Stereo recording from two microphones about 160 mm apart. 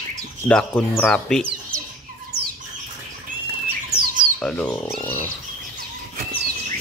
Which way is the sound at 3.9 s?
65° right (ahead or behind).